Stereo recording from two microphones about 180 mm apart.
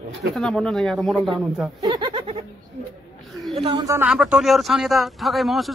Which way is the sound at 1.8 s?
25° right (ahead or behind).